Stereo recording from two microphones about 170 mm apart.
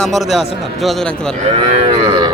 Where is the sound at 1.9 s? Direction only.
25° right (ahead or behind).